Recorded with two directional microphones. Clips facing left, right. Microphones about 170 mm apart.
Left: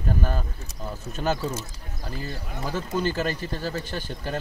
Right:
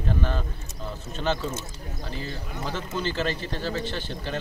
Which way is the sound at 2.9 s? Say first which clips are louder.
Left 5 dB; 45° left (ahead or behind).